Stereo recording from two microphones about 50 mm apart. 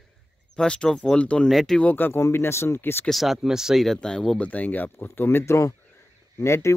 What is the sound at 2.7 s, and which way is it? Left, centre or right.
Speech, left.